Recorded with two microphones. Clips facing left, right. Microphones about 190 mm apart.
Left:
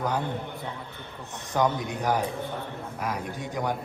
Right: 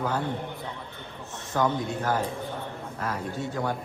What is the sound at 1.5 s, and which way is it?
A man's voice, 15° left (ahead or behind).